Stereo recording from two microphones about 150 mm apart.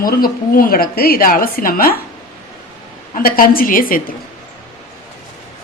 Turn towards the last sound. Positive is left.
turn(degrees=70)  # may be behind; listen again after turning